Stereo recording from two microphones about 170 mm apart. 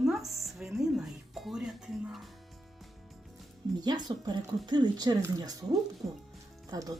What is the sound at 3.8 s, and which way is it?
Speech, 25° right (ahead or behind).